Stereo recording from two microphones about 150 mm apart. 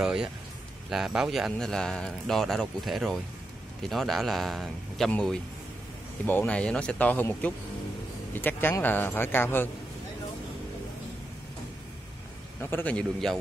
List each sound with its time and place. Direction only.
0.0 s a man's voice: 5° right (ahead or behind); by 9.7 s 15° left (ahead or behind)
12.6 s speech: 10° left (ahead or behind)